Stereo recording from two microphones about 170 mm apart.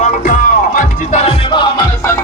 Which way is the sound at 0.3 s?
50° left (ahead or behind).